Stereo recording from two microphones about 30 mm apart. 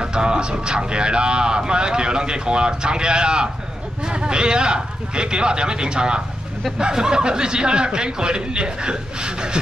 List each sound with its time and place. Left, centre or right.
0.0 s speech: right